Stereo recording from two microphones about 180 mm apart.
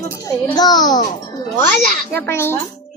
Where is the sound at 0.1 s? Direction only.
15° left (ahead or behind).